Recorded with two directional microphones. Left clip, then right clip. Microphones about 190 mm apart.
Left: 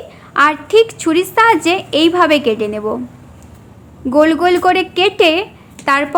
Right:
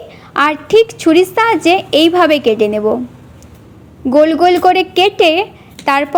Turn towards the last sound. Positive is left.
turn(degrees=-20)  # may be behind; listen again after turning